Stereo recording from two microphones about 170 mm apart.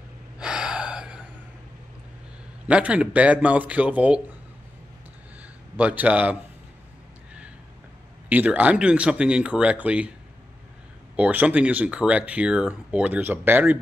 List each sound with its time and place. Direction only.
0.4 s gasp: 5° right (ahead or behind)
2.6 s speech: 5° right (ahead or behind)
5.8 s speech: 10° right (ahead or behind)
8.3 s speech: 10° right (ahead or behind)
11.1 s speech: 10° right (ahead or behind)